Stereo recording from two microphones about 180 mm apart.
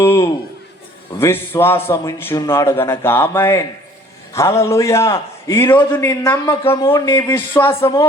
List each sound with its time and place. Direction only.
0.0 s a man's voice: 15° left (ahead or behind)
6.8 s speech: 25° left (ahead or behind)
7.3 s a man's voice: 10° left (ahead or behind)